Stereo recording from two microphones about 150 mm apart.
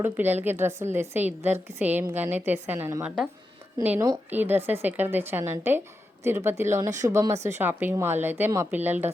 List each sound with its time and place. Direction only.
0.0 s a woman's voice: 15° right (ahead or behind)
3.8 s speech: 25° right (ahead or behind)
4.3 s a woman's voice: 10° right (ahead or behind)